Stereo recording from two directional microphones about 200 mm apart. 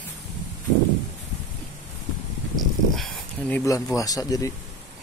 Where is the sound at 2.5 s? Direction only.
Centre (ahead or behind).